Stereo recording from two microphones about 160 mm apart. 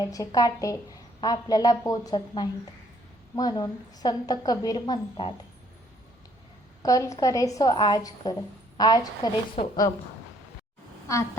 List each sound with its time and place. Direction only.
0.0 s a woman's voice: 20° left (ahead or behind)
6.8 s a woman's voice: 20° left (ahead or behind)
9.6 s a woman's voice: 40° left (ahead or behind)